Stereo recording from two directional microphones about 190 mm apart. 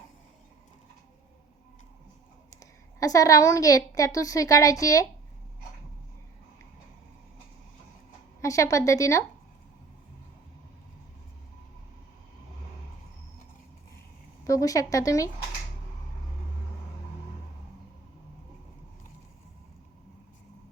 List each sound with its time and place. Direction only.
2.5 s a woman's voice: 20° left (ahead or behind)
8.4 s a woman's voice: 15° left (ahead or behind)
14.4 s a woman's voice: 15° left (ahead or behind)